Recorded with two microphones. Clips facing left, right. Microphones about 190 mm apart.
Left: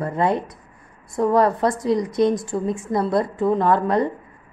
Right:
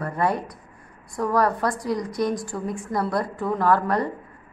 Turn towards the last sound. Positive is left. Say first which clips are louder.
# left 3 dB
turn(degrees=20)  # may be behind; listen again after turning